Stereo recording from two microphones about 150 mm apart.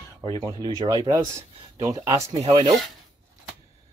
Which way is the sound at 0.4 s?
25° right (ahead or behind).